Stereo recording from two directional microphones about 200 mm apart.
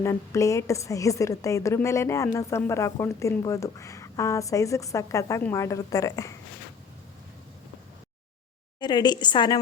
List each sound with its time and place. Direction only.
0.0 s a woman's voice: 15° left (ahead or behind)
8.8 s a woman's voice: 20° left (ahead or behind)